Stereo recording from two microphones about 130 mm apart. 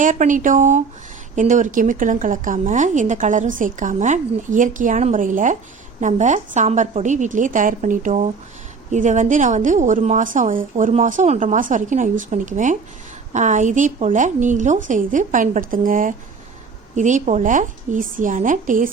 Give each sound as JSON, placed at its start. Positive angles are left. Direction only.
{"t": 0.0, "sound": "speech", "side_deg": -85}
{"t": 6.0, "sound": "a woman's voice", "side_deg": -70}
{"t": 16.9, "sound": "speech", "side_deg": -70}